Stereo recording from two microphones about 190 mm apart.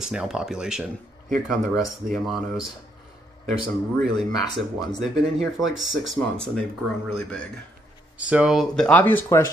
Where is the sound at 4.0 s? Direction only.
Centre (ahead or behind).